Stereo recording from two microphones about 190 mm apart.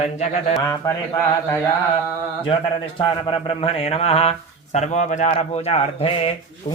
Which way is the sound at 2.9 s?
30° left (ahead or behind).